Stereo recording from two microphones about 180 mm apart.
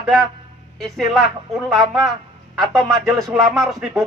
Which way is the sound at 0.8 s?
Centre (ahead or behind).